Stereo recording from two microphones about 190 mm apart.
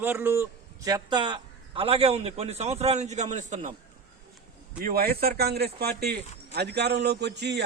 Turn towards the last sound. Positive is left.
turn(degrees=-60)  # may be behind; listen again after turning